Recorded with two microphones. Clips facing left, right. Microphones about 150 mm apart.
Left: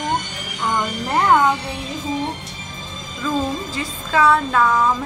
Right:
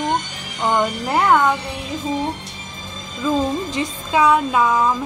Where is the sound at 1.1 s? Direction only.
5° right (ahead or behind).